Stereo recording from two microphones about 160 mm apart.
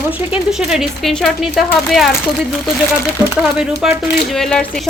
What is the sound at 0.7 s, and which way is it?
Speech, centre (ahead or behind).